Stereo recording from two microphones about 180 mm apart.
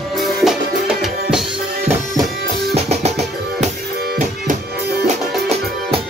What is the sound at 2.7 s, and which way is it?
Music, 40° right (ahead or behind).